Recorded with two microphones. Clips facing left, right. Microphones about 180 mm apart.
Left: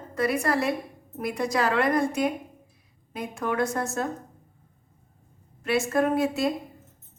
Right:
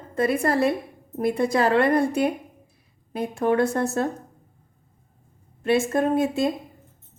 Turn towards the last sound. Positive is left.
turn(degrees=-25)  # may be behind; listen again after turning